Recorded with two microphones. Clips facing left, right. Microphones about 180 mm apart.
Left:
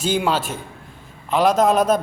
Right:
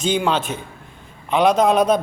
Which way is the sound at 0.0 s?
5° left (ahead or behind).